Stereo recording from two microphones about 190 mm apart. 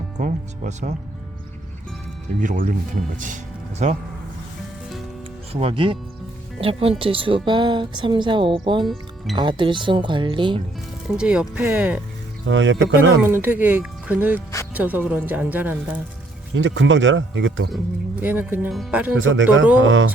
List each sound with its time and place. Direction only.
0.2 s speech: 40° right (ahead or behind)
2.4 s speech: 45° right (ahead or behind)
5.5 s a woman's voice: 30° right (ahead or behind)
11.2 s speech: 5° right (ahead or behind)
12.5 s speech: 75° right (ahead or behind)
13.2 s speech: 10° right (ahead or behind)
16.6 s speech: 75° right (ahead or behind)
18.2 s speech: 10° right (ahead or behind)
19.1 s speech: 90° right
19.8 s a sound: 85° right